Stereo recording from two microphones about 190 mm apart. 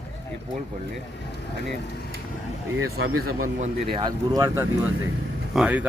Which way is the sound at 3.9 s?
20° right (ahead or behind).